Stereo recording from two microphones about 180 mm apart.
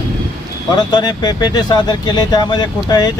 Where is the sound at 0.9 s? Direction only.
25° left (ahead or behind).